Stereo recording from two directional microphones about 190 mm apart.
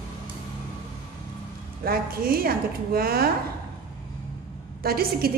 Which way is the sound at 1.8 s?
50° right (ahead or behind).